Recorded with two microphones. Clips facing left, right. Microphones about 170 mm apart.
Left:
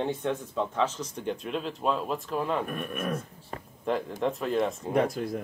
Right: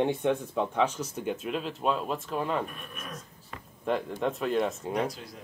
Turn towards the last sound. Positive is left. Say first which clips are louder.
# left 6 dB
turn(degrees=50)  # may be behind; listen again after turning